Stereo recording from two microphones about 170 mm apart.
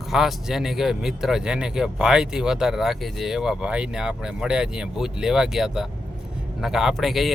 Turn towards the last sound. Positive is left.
turn(degrees=0)  # may be behind; listen again after turning